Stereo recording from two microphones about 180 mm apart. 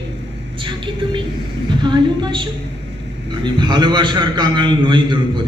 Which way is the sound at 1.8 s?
25° right (ahead or behind).